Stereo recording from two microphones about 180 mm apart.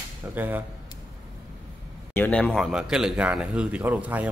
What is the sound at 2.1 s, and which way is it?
A man's voice, 10° left (ahead or behind).